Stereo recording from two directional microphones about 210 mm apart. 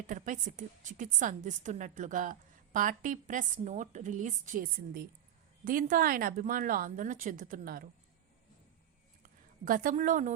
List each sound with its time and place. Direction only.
0.1 s a woman's voice: 35° right (ahead or behind)
9.2 s a woman's voice: 40° right (ahead or behind)